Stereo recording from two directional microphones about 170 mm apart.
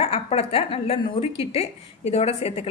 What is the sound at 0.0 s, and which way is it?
A woman's voice, 35° left (ahead or behind).